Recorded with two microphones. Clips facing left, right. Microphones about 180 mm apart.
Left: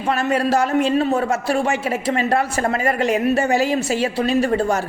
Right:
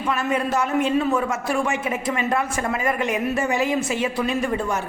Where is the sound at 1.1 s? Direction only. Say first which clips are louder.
Left 3 dB; 70° left (ahead or behind).